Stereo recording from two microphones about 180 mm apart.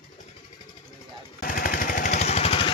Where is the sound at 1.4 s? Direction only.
50° left (ahead or behind); by 2.7 s 30° left (ahead or behind).